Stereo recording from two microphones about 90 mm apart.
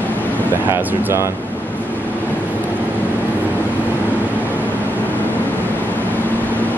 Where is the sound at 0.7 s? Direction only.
25° right (ahead or behind).